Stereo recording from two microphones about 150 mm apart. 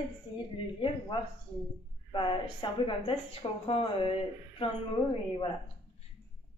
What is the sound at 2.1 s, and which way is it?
A woman's voice, 35° left (ahead or behind).